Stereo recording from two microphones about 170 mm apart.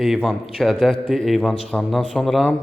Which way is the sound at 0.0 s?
Centre (ahead or behind).